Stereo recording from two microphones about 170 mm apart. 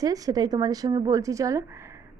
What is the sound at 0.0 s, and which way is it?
A woman's voice, 20° right (ahead or behind).